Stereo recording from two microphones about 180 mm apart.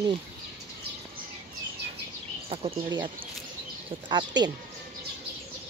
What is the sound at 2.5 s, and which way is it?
Speech, 25° right (ahead or behind).